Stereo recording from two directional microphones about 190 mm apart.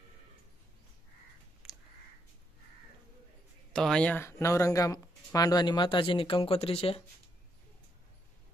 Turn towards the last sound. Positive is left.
turn(degrees=30)  # may be behind; listen again after turning